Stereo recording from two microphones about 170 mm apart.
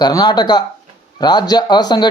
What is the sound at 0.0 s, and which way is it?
Speech, 25° left (ahead or behind).